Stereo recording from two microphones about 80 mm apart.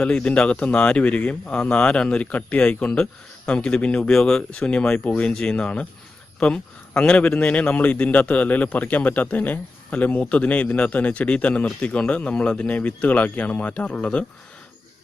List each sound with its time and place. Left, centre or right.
0.0 s a man's voice: centre